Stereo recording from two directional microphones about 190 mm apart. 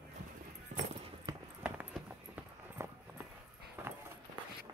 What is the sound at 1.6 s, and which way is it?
Clip-clop, 5° right (ahead or behind).